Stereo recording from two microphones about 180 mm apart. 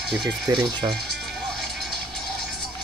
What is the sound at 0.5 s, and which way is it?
Speech, 20° right (ahead or behind).